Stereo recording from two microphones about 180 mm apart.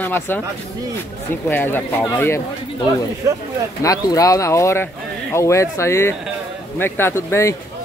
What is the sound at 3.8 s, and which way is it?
Speech, 20° left (ahead or behind).